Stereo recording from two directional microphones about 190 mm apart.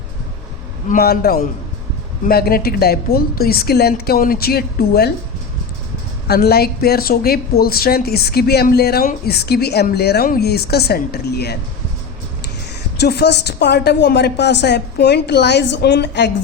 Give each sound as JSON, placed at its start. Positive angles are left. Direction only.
{"t": 0.9, "sound": "a woman's voice", "side_deg": 55}
{"t": 6.2, "sound": "a woman's voice", "side_deg": 55}
{"t": 13.0, "sound": "a woman's voice", "side_deg": 60}